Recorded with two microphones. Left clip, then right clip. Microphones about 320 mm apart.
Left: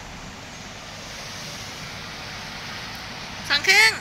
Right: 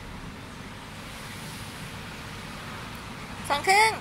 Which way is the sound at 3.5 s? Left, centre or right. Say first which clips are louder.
Left 4 dB; centre.